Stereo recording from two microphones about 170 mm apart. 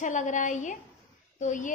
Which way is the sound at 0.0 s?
45° left (ahead or behind).